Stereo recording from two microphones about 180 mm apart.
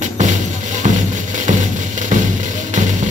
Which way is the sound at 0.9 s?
40° right (ahead or behind).